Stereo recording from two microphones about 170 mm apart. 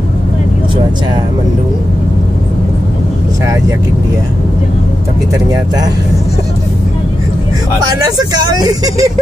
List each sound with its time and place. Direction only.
7.8 s speech: 20° right (ahead or behind)